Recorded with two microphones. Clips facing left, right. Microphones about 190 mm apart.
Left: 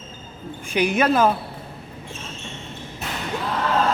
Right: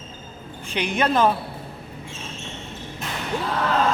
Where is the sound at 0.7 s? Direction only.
10° left (ahead or behind).